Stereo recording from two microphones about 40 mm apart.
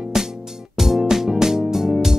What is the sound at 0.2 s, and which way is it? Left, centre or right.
Music, centre.